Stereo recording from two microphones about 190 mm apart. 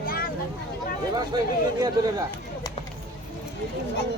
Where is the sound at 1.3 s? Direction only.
25° right (ahead or behind).